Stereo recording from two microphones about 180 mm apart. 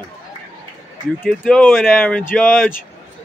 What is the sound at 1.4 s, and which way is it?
Speech, 10° left (ahead or behind).